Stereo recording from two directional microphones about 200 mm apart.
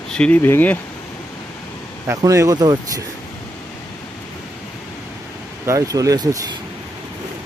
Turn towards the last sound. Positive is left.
turn(degrees=-15)  # may be behind; listen again after turning